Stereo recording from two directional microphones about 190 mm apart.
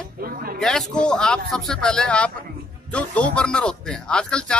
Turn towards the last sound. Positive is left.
turn(degrees=5)  # may be behind; listen again after turning